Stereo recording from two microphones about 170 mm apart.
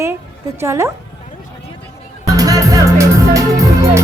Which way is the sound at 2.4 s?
20° right (ahead or behind).